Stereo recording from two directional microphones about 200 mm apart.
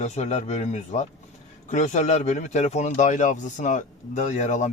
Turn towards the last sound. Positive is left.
turn(degrees=35)  # may be behind; listen again after turning